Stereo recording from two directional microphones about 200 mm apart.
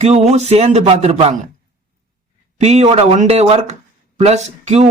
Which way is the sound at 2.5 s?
35° right (ahead or behind).